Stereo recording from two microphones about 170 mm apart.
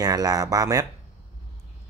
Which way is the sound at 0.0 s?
20° right (ahead or behind).